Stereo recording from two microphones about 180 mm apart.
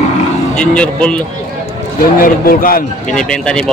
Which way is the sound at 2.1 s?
50° left (ahead or behind).